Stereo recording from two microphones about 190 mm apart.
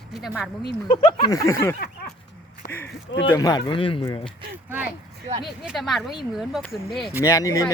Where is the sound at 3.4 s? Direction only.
20° left (ahead or behind).